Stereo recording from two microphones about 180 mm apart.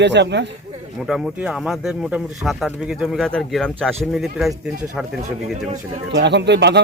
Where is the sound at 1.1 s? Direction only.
Centre (ahead or behind).